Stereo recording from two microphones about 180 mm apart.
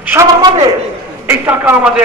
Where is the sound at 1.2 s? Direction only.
10° right (ahead or behind).